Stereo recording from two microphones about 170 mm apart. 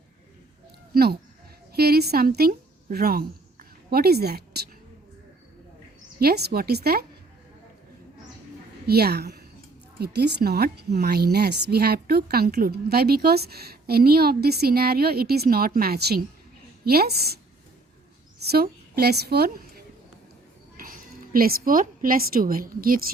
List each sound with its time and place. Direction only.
1.7 s a woman's voice: 65° right (ahead or behind)
6.1 s a woman's voice: 70° right (ahead or behind)
8.9 s a woman's voice: 65° right (ahead or behind)
18.4 s a woman's voice: 65° right (ahead or behind)